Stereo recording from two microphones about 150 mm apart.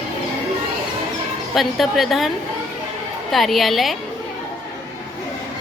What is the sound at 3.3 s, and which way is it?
Speech, centre (ahead or behind).